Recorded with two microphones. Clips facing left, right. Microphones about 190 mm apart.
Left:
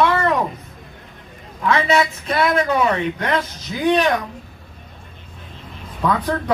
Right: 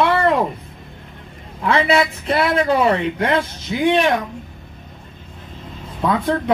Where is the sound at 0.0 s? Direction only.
30° right (ahead or behind).